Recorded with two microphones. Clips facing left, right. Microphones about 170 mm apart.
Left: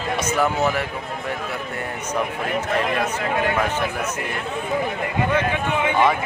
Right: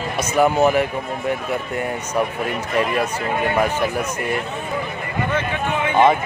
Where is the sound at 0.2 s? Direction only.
15° right (ahead or behind).